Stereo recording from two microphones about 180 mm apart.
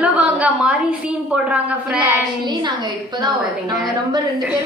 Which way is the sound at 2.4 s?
25° right (ahead or behind).